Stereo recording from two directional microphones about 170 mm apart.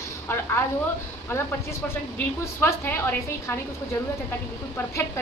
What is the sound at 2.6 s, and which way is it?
Speech, 15° left (ahead or behind).